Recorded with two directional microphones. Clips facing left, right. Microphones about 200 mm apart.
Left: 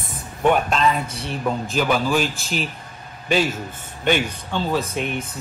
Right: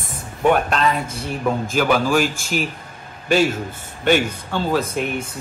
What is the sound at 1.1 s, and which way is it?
Speech, 50° right (ahead or behind).